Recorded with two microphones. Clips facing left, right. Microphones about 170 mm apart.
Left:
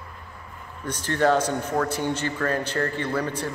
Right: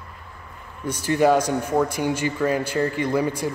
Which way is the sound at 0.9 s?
10° right (ahead or behind).